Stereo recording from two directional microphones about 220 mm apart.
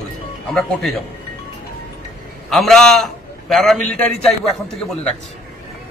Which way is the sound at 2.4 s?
Centre (ahead or behind).